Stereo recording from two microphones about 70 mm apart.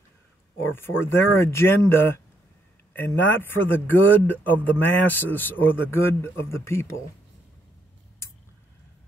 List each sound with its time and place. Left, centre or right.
0.6 s speech: left